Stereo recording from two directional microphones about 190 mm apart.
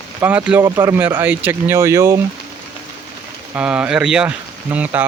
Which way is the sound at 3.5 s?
5° right (ahead or behind).